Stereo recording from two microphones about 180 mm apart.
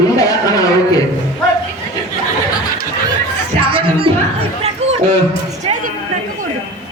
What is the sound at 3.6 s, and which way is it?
Music, 30° right (ahead or behind).